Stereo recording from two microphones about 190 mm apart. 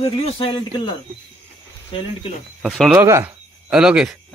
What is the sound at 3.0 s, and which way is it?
Speech, 15° right (ahead or behind).